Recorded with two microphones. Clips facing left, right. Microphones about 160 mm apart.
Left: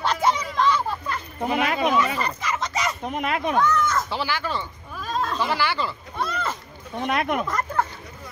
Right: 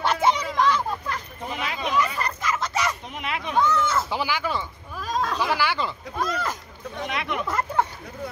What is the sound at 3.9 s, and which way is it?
Speech, 10° right (ahead or behind).